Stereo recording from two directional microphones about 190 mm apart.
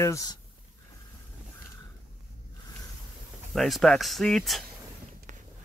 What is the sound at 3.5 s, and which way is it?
Speech, centre (ahead or behind).